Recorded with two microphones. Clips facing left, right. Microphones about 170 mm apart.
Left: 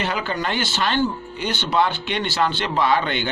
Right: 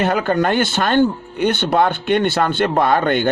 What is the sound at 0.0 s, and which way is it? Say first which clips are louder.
Speech: right 8 dB; 50° right (ahead or behind).